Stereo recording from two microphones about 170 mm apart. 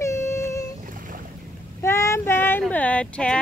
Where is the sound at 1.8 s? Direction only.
15° left (ahead or behind).